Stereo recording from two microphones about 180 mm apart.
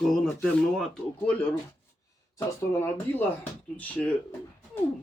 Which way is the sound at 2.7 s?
10° left (ahead or behind).